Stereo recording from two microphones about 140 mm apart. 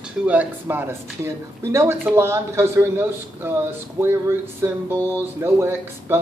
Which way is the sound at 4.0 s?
15° right (ahead or behind).